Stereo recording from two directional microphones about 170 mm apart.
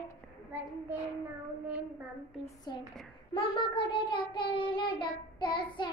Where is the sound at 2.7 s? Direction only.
25° left (ahead or behind).